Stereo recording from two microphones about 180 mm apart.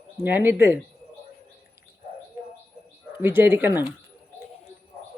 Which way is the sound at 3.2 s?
10° right (ahead or behind).